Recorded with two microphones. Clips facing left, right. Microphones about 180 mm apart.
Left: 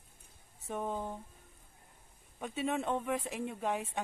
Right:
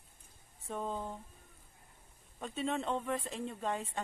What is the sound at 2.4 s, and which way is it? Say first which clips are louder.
Speech: left 1 dB; 5° left (ahead or behind).